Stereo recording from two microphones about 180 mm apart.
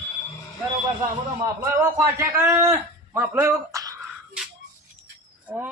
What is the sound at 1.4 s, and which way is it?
Speech, 15° right (ahead or behind).